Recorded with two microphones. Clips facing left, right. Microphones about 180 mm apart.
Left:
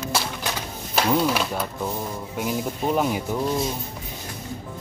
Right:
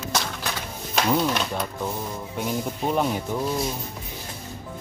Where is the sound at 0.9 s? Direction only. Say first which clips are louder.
Left 1 dB; 5° left (ahead or behind).